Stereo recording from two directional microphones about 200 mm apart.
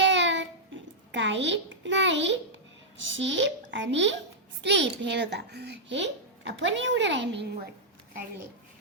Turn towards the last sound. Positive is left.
turn(degrees=-60)  # may be behind; listen again after turning